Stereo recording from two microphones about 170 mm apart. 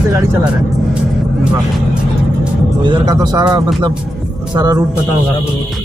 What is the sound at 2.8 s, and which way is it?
Speech, 25° right (ahead or behind).